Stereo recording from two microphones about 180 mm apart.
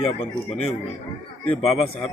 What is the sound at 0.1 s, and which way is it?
Speech, 35° left (ahead or behind).